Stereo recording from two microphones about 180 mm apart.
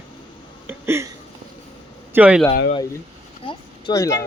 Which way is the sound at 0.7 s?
15° right (ahead or behind).